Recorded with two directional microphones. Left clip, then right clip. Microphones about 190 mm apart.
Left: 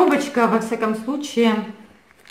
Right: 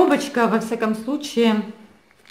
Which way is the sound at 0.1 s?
35° right (ahead or behind).